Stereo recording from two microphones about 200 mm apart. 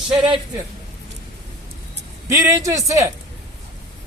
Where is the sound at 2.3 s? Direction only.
15° right (ahead or behind).